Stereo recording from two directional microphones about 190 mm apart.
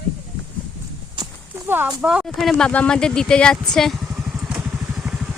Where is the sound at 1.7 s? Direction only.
10° right (ahead or behind).